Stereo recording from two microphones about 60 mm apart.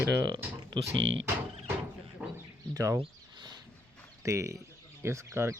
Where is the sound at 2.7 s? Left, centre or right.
Right.